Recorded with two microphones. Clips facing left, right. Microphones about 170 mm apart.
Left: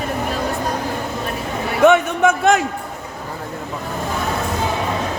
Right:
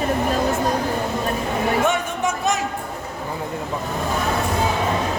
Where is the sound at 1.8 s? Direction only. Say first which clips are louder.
Left 8 dB; 65° left (ahead or behind).